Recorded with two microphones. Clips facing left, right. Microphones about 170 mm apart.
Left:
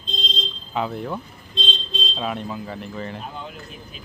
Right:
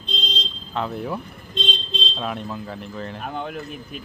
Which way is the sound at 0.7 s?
Centre (ahead or behind).